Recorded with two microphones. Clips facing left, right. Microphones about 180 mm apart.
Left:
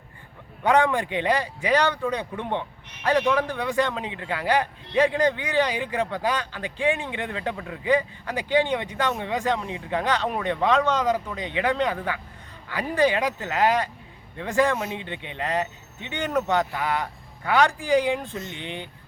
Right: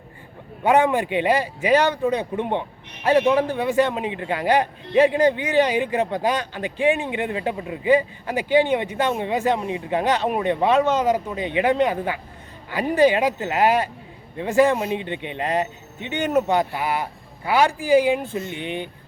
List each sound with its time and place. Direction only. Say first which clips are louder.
0.7 s a man's voice: right 3 dB; 15° right (ahead or behind)